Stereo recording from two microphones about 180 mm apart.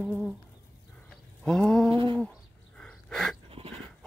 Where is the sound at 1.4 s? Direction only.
5° left (ahead or behind).